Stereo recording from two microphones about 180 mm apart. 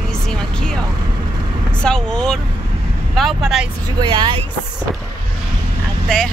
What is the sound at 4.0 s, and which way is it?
Speech, 25° right (ahead or behind).